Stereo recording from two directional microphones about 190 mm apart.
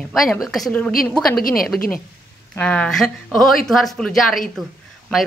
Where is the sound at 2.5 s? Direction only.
5° left (ahead or behind).